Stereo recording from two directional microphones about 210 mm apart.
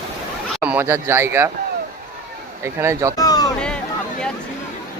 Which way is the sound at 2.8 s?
15° right (ahead or behind).